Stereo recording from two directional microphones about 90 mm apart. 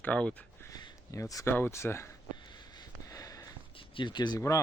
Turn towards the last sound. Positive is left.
turn(degrees=35)  # may be behind; listen again after turning